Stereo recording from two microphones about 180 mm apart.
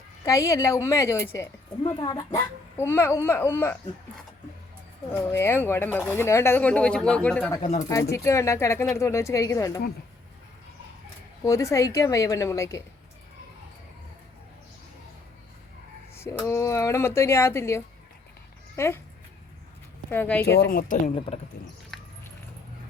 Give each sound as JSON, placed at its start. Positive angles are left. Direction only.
{"t": 0.3, "sound": "a woman's voice", "side_deg": 15}
{"t": 5.1, "sound": "a woman's voice", "side_deg": 10}
{"t": 7.6, "sound": "speech", "side_deg": 35}
{"t": 8.1, "sound": "a woman's voice", "side_deg": 15}
{"t": 11.4, "sound": "a woman's voice", "side_deg": 20}
{"t": 16.1, "sound": "a woman's voice", "side_deg": 15}
{"t": 20.1, "sound": "a woman's voice", "side_deg": 10}
{"t": 20.6, "sound": "speech", "side_deg": 55}
{"t": 21.2, "sound": "speech", "side_deg": 35}